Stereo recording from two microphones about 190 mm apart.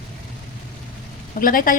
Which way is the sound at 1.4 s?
45° left (ahead or behind).